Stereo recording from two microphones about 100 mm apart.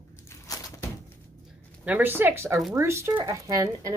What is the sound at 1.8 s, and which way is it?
Speech, 20° right (ahead or behind).